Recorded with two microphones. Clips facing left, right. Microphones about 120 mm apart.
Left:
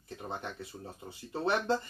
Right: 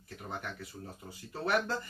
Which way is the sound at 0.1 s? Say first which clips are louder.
Left 2 dB; 25° left (ahead or behind).